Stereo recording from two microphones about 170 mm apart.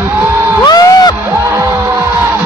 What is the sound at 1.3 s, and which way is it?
Music, 15° right (ahead or behind).